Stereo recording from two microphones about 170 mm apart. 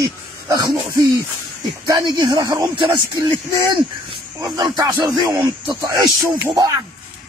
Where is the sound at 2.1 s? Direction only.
25° right (ahead or behind).